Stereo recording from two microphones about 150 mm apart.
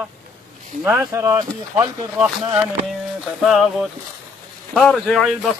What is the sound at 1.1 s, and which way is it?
Speech, 20° right (ahead or behind).